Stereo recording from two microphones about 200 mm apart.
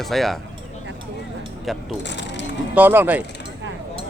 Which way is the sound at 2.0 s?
60° left (ahead or behind).